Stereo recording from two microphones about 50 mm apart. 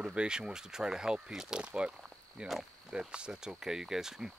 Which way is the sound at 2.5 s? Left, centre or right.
Centre.